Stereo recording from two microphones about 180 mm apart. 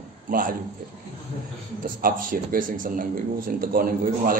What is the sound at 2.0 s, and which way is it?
A man's voice, 50° right (ahead or behind).